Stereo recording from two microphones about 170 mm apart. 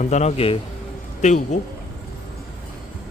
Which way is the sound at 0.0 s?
45° left (ahead or behind).